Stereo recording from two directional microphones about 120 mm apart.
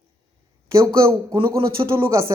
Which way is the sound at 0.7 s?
25° right (ahead or behind).